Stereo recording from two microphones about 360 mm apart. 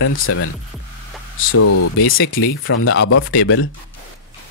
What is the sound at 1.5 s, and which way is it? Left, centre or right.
Speech, left.